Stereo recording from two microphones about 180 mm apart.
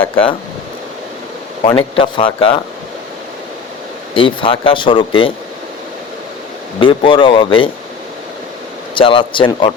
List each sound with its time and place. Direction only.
1.6 s speech: 30° left (ahead or behind)
4.1 s speech: 30° left (ahead or behind)
6.7 s speech: 30° left (ahead or behind)
9.0 s speech: 30° left (ahead or behind)